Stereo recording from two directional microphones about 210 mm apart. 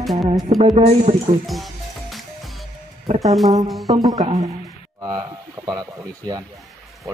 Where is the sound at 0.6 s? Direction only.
30° right (ahead or behind).